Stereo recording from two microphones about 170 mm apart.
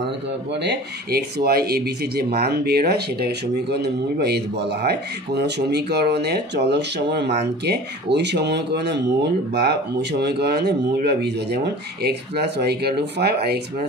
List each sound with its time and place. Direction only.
0.7 s speech: 65° right (ahead or behind); by 9.0 s 85° right
9.6 s speech: 75° right (ahead or behind)